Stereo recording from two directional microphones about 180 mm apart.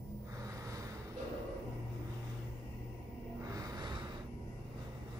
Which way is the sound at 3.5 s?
20° right (ahead or behind).